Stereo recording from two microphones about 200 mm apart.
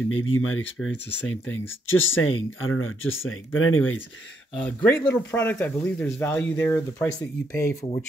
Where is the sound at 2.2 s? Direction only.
90° left.